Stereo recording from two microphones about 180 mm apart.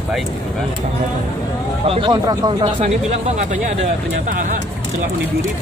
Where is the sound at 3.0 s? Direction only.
40° right (ahead or behind).